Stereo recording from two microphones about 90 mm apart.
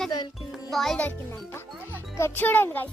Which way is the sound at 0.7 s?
Centre (ahead or behind).